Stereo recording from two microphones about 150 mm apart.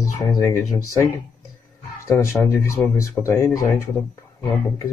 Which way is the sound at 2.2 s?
15° left (ahead or behind).